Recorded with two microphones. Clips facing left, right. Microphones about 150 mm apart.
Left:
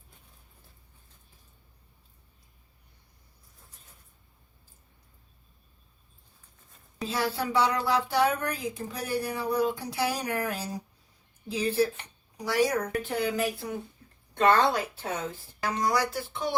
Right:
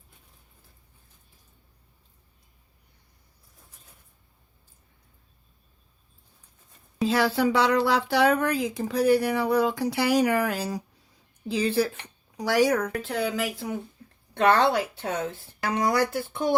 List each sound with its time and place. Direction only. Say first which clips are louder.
7.1 s speech: right 5 dB; 85° right
14.3 s speech: right 2 dB; 70° right (ahead or behind); by 16.6 s 50° right (ahead or behind)